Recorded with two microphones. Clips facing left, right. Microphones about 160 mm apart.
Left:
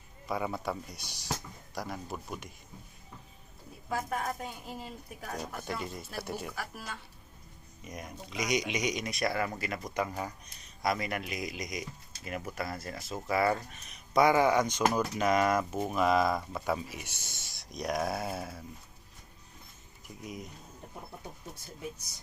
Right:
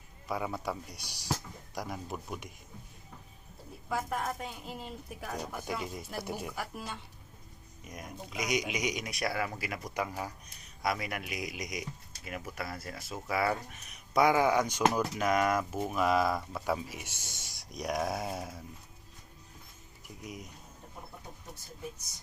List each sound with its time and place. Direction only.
0.3 s a man's voice: 5° right (ahead or behind)
3.9 s speech: centre (ahead or behind); by 7.0 s 20° right (ahead or behind)
7.9 s speech: centre (ahead or behind)
20.2 s speech: 10° right (ahead or behind)